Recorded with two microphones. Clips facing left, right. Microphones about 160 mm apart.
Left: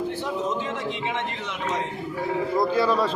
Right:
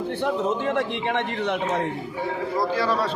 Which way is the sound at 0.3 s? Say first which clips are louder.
Right 4 dB; 60° right (ahead or behind).